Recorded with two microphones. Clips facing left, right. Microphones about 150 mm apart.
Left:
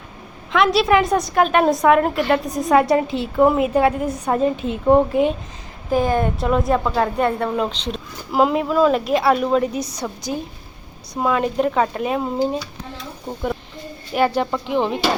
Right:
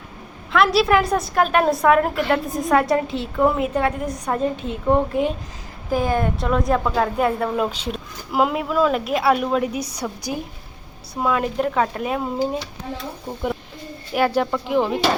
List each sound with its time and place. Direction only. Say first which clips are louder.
0.5 s a woman's voice: left 1 dB; centre (ahead or behind)
11.2 s a woman's voice: left 2 dB; 5° left (ahead or behind)
13.2 s a woman's voice: left 2 dB; 5° right (ahead or behind)